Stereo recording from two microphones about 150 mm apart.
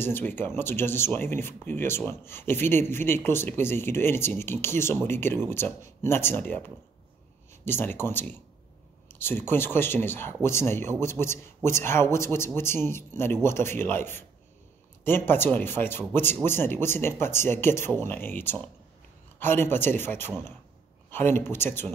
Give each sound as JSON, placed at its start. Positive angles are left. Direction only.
{"t": 0.0, "sound": "speech", "side_deg": 15}